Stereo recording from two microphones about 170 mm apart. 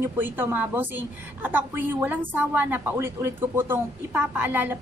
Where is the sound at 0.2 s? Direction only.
10° right (ahead or behind).